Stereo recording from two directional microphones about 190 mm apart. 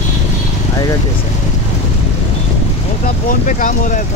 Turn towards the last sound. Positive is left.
turn(degrees=40)  # may be behind; listen again after turning